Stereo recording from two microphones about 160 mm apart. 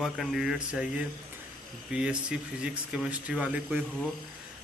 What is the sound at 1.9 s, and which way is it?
Speech, 5° right (ahead or behind).